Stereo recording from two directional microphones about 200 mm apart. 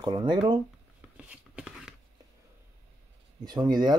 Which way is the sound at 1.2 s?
5° right (ahead or behind).